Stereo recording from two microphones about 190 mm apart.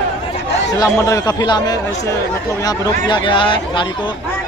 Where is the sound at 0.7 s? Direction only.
15° left (ahead or behind).